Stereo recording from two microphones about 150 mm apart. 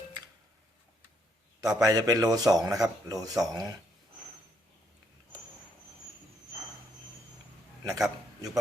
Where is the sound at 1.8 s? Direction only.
25° right (ahead or behind).